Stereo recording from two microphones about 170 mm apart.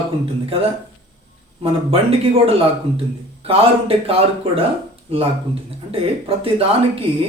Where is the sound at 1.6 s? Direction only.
35° right (ahead or behind).